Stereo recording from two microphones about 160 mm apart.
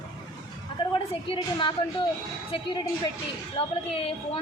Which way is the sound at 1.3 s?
30° left (ahead or behind).